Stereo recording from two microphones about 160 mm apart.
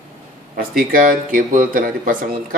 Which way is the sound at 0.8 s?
60° right (ahead or behind).